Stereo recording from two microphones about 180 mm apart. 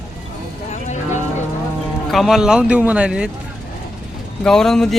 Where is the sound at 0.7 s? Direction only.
40° left (ahead or behind).